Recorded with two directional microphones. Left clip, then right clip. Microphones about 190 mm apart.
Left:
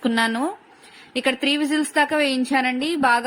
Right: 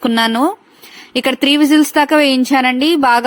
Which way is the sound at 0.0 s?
40° right (ahead or behind).